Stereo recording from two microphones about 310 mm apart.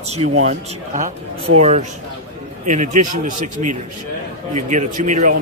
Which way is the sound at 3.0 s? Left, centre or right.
Right.